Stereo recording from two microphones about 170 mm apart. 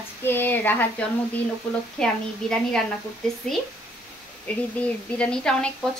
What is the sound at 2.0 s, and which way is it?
Speech, 5° left (ahead or behind).